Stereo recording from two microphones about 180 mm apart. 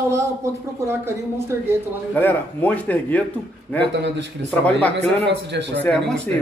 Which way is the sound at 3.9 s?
80° right.